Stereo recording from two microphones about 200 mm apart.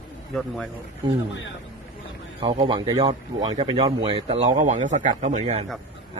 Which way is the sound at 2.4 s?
25° right (ahead or behind).